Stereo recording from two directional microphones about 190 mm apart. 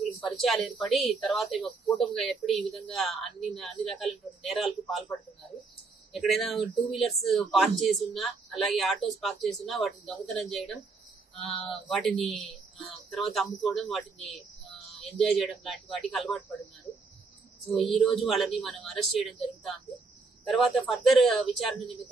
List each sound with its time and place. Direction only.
0.2 s speech: centre (ahead or behind)
6.1 s speech: centre (ahead or behind)
16.9 s a sound: 15° left (ahead or behind)
17.7 s speech: centre (ahead or behind)